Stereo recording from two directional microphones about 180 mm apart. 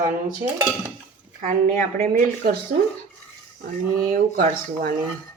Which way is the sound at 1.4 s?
45° right (ahead or behind).